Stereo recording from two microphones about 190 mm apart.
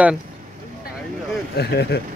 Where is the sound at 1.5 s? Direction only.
60° left (ahead or behind).